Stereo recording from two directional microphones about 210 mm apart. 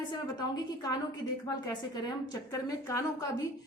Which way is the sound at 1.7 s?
20° left (ahead or behind).